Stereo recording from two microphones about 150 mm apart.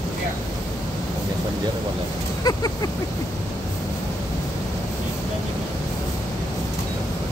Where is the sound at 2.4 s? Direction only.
25° left (ahead or behind).